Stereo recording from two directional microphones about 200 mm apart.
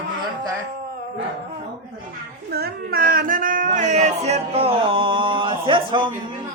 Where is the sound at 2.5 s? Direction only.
50° right (ahead or behind).